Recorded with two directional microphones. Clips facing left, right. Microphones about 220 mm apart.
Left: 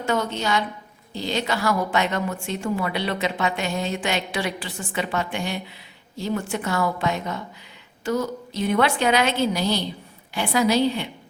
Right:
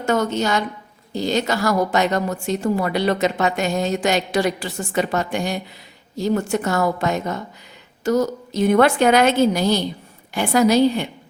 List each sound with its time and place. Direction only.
0.0 s a woman's voice: 45° right (ahead or behind)